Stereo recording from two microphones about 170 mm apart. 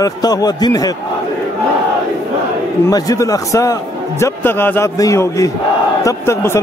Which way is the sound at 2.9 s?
20° left (ahead or behind).